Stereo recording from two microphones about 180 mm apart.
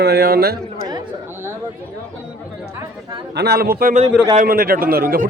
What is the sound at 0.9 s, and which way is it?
Speech, 20° right (ahead or behind).